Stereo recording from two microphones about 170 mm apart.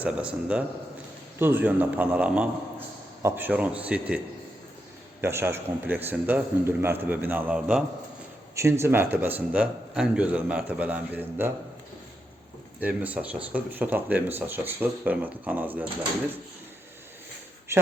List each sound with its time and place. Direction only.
0.0 s a man's voice: 5° right (ahead or behind)
5.2 s a man's voice: 15° right (ahead or behind)
12.8 s a man's voice: 10° right (ahead or behind)
17.7 s a man's voice: 15° right (ahead or behind)